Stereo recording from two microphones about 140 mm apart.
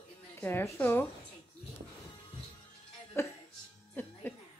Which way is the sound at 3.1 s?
20° left (ahead or behind).